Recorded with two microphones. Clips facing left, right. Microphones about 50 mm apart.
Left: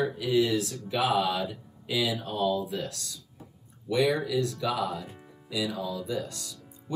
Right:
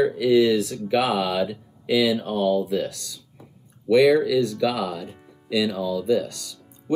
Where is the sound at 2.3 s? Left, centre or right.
Right.